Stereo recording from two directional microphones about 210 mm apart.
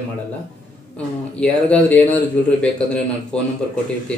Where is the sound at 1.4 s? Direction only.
5° left (ahead or behind).